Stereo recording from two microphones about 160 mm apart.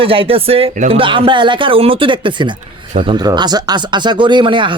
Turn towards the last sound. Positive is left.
turn(degrees=-30)  # may be behind; listen again after turning